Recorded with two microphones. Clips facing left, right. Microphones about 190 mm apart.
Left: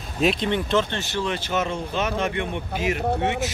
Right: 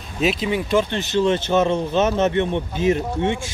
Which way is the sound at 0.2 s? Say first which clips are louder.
Right 1 dB; 5° right (ahead or behind).